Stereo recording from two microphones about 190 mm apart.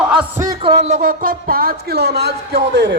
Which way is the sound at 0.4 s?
25° right (ahead or behind).